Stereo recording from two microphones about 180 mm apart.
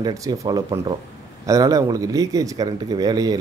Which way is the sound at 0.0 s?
20° right (ahead or behind).